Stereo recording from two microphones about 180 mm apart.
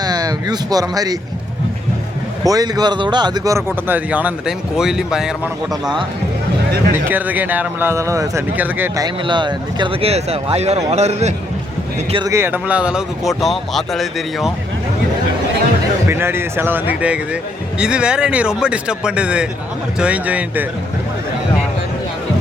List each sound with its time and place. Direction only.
0.0 s speech: 20° right (ahead or behind)
2.4 s speech: 20° right (ahead or behind); by 5.3 s 5° right (ahead or behind)
7.1 s speech: 10° right (ahead or behind)
9.0 s speech: 25° right (ahead or behind)
12.1 s speech: 20° right (ahead or behind); by 14.5 s centre (ahead or behind)
16.0 s speech: 15° right (ahead or behind)